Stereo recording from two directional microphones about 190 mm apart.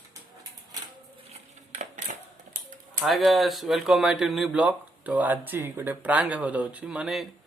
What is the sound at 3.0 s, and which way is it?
Speech, centre (ahead or behind).